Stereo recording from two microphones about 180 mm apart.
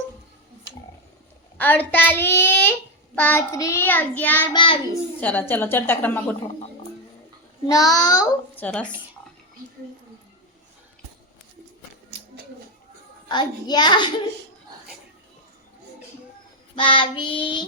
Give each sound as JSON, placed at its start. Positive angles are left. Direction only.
{"t": 1.5, "sound": "child singing", "side_deg": 10}
{"t": 4.5, "sound": "child singing", "side_deg": 30}
{"t": 5.2, "sound": "child singing", "side_deg": 10}
{"t": 7.7, "sound": "child singing", "side_deg": 20}
{"t": 8.5, "sound": "speech", "side_deg": 10}
{"t": 13.2, "sound": "child singing", "side_deg": 25}
{"t": 16.7, "sound": "child singing", "side_deg": 30}